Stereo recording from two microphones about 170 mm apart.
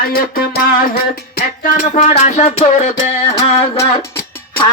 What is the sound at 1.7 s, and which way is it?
Music, 50° left (ahead or behind).